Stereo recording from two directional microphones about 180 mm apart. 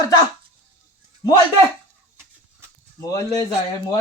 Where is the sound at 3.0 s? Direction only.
20° left (ahead or behind).